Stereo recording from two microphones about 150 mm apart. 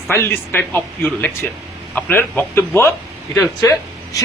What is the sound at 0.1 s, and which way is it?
Speech, 15° left (ahead or behind).